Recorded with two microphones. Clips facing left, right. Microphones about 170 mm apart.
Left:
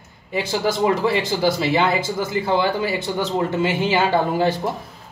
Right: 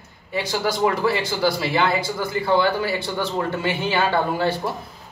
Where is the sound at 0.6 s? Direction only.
20° left (ahead or behind).